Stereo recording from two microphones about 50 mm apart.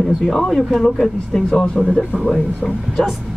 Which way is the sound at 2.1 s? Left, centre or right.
Left.